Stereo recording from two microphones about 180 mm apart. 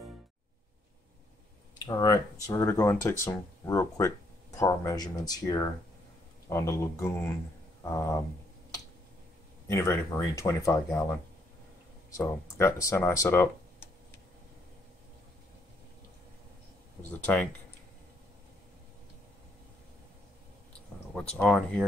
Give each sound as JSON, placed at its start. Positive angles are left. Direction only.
{"t": 1.9, "sound": "speech", "side_deg": 20}
{"t": 9.7, "sound": "speech", "side_deg": 15}
{"t": 17.1, "sound": "speech", "side_deg": 10}
{"t": 21.1, "sound": "speech", "side_deg": 5}